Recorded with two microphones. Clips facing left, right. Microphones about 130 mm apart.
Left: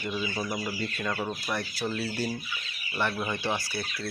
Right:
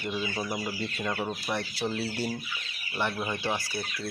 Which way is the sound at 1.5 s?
25° right (ahead or behind).